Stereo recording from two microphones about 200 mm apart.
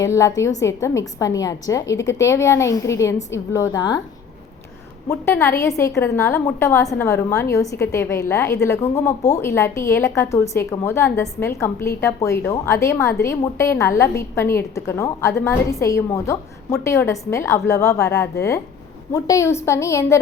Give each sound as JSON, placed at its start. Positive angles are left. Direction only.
{"t": 0.0, "sound": "a woman's voice", "side_deg": 15}
{"t": 5.0, "sound": "a woman's voice", "side_deg": 15}